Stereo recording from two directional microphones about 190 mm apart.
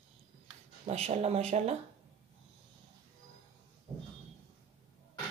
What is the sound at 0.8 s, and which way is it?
Speech, 35° right (ahead or behind).